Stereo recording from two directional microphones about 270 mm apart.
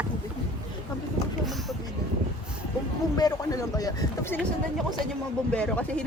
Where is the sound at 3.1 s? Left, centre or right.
Centre.